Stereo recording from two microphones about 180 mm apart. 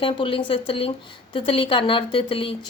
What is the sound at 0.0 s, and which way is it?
A woman's voice, 25° left (ahead or behind).